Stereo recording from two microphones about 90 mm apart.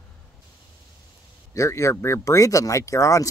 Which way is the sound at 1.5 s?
35° left (ahead or behind).